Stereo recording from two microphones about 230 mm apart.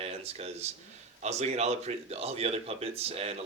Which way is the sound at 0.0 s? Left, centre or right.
Right.